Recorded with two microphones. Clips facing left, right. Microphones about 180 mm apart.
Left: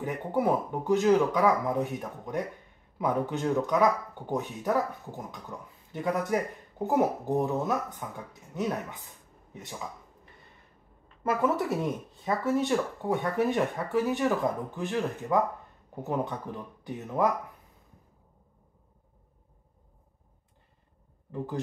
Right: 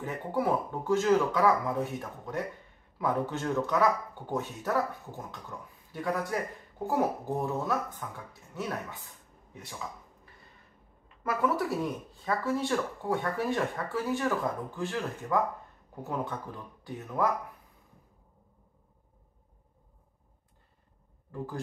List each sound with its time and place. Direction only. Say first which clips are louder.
0.0 s speech: left 3 dB; 15° left (ahead or behind)
11.2 s speech: left 2 dB; 20° left (ahead or behind)